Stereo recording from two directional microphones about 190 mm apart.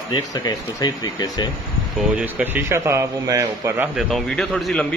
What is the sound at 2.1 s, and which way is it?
A man's voice, 5° right (ahead or behind).